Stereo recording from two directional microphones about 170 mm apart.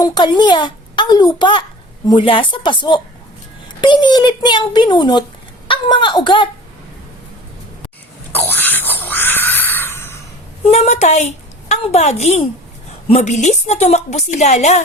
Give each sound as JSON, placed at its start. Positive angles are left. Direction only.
{"t": 0.0, "sound": "a child's voice", "side_deg": 25}
{"t": 8.3, "sound": "a sound", "side_deg": 10}
{"t": 10.7, "sound": "a woman's voice", "side_deg": 40}